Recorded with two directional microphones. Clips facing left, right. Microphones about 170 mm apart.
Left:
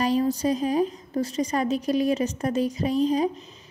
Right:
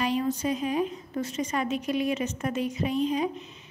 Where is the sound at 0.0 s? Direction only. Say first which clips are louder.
Left 4 dB; 35° left (ahead or behind).